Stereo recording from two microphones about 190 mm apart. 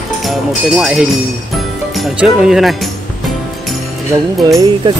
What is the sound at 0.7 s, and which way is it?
Speech, centre (ahead or behind).